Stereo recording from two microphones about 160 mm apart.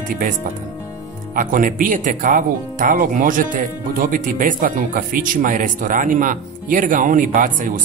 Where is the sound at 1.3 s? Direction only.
60° right (ahead or behind).